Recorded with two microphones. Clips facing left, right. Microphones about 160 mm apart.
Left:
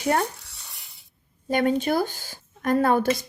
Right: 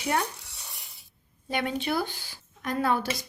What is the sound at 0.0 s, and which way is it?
Speech, 45° left (ahead or behind).